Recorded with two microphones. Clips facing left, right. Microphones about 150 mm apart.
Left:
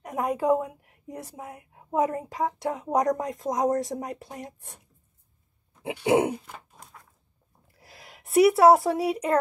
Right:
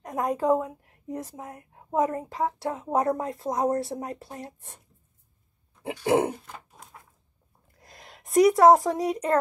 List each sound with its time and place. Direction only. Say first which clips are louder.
0.0 s a woman's voice: even; 10° left (ahead or behind)
5.8 s a sound: left 1 dB; 15° left (ahead or behind)
7.8 s speech: even; 5° left (ahead or behind)